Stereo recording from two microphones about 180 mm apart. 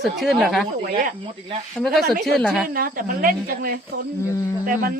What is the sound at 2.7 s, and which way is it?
A woman's voice, 50° right (ahead or behind).